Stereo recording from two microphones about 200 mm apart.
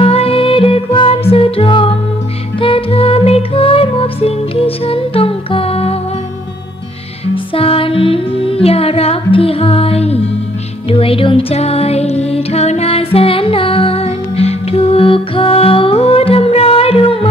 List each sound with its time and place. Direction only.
0.0 s music: 30° left (ahead or behind)
7.3 s music: 30° left (ahead or behind)